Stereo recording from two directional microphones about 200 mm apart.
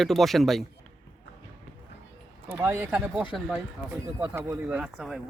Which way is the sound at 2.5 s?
10° right (ahead or behind).